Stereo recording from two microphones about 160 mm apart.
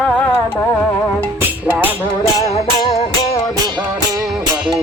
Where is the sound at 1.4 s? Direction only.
10° right (ahead or behind).